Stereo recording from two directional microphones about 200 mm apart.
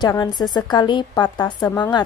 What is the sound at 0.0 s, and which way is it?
A woman's voice, 20° left (ahead or behind).